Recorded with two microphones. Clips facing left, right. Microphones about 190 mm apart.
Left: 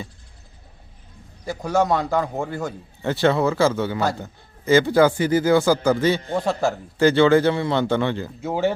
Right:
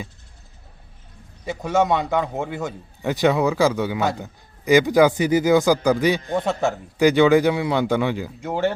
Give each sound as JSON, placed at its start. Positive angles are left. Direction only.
{"t": 1.5, "sound": "a man's voice", "side_deg": 0}
{"t": 3.0, "sound": "speech", "side_deg": -15}
{"t": 6.3, "sound": "a man's voice", "side_deg": 0}
{"t": 7.0, "sound": "speech", "side_deg": -15}
{"t": 8.4, "sound": "speech", "side_deg": 5}